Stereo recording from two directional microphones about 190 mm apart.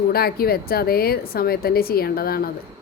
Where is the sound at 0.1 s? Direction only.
55° left (ahead or behind).